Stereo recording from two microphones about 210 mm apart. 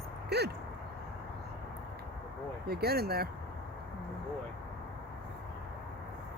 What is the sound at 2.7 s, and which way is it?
Speech, 50° right (ahead or behind).